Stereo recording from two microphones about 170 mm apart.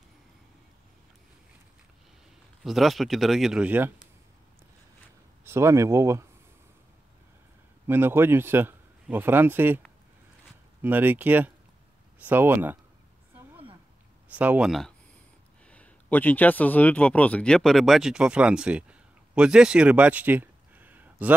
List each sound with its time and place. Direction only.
2.6 s speech: centre (ahead or behind)
5.4 s speech: 15° right (ahead or behind)
7.8 s speech: 15° right (ahead or behind)
10.8 s speech: 10° right (ahead or behind)
14.3 s speech: 10° right (ahead or behind)